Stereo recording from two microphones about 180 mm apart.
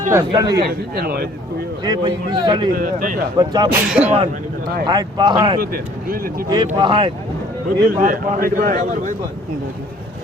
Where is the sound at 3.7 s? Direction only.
10° right (ahead or behind).